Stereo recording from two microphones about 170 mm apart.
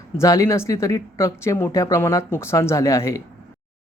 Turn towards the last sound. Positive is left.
turn(degrees=20)  # may be behind; listen again after turning